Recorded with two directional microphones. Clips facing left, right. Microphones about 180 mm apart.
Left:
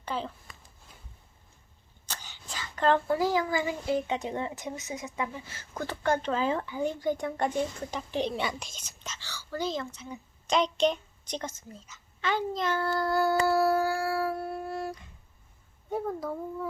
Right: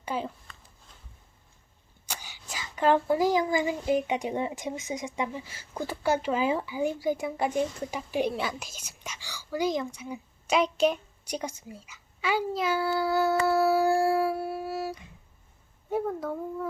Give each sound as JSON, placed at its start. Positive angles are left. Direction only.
{"t": 0.0, "sound": "a sound", "side_deg": -10}
{"t": 2.0, "sound": "a child's voice", "side_deg": -10}
{"t": 13.8, "sound": "music", "side_deg": -25}
{"t": 14.3, "sound": "humming", "side_deg": -5}
{"t": 15.9, "sound": "a child's voice", "side_deg": 0}